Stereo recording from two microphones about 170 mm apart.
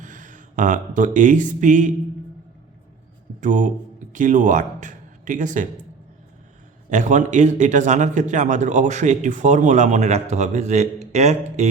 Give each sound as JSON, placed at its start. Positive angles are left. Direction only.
{"t": 0.0, "sound": "speech", "side_deg": -50}
{"t": 3.4, "sound": "a man's voice", "side_deg": -50}
{"t": 6.9, "sound": "a man's voice", "side_deg": -45}